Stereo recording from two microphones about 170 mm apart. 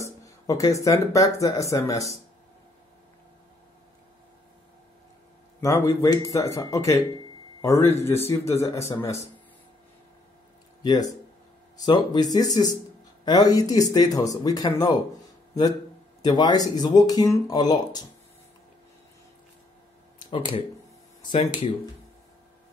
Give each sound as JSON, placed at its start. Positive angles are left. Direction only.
{"t": 0.0, "sound": "speech", "side_deg": 20}
{"t": 5.6, "sound": "speech", "side_deg": 20}
{"t": 10.8, "sound": "speech", "side_deg": 25}
{"t": 16.2, "sound": "speech", "side_deg": 25}
{"t": 20.2, "sound": "speech", "side_deg": 30}
{"t": 21.2, "sound": "a sound", "side_deg": 30}